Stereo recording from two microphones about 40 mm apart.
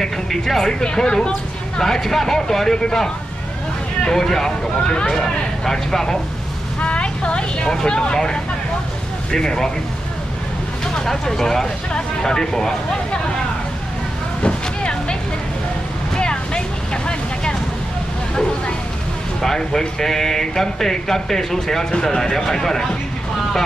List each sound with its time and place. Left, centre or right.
0.0 s speech: centre
4.1 s speech: centre
5.1 s speech: centre
6.8 s a sound: left
7.7 s speech: left
9.3 s speech: centre
11.1 s speech: centre
14.4 s vehicle: left
16.2 s vehicle: left
19.4 s speech: centre